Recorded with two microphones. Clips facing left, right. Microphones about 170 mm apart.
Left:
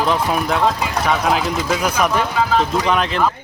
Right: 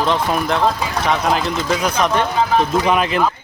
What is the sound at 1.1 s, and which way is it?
Speech, centre (ahead or behind).